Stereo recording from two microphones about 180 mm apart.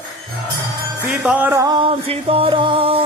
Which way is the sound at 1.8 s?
30° right (ahead or behind).